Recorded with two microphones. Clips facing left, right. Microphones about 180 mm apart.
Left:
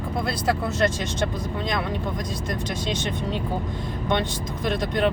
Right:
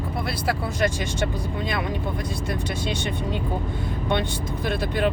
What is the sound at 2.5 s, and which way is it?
Speech, 10° right (ahead or behind).